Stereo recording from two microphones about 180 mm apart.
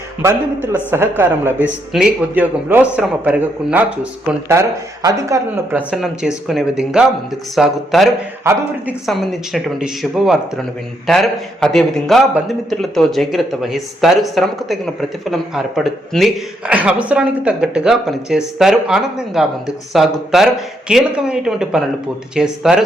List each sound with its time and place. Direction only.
0.2 s a man's voice: 10° right (ahead or behind)
5.9 s a man's voice: 5° right (ahead or behind)
8.4 s a man's voice: 15° right (ahead or behind)
9.0 s a man's voice: centre (ahead or behind)